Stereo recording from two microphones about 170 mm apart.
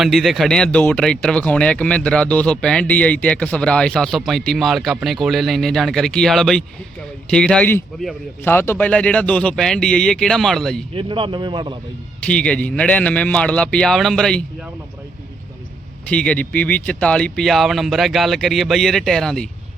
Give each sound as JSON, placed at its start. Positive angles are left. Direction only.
{"t": 0.0, "sound": "speech", "side_deg": 0}
{"t": 10.9, "sound": "a man's voice", "side_deg": -30}
{"t": 12.2, "sound": "a man's voice", "side_deg": 5}
{"t": 16.0, "sound": "speech", "side_deg": 5}